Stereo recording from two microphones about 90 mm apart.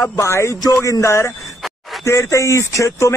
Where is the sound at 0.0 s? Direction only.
30° left (ahead or behind).